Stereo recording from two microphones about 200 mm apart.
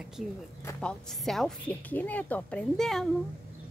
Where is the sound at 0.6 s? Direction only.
10° left (ahead or behind).